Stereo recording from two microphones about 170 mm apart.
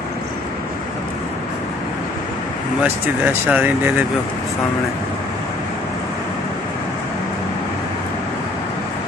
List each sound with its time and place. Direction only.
2.8 s speech: 10° right (ahead or behind)